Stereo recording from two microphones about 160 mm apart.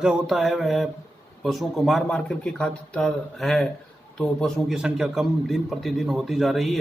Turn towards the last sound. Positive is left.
turn(degrees=0)  # may be behind; listen again after turning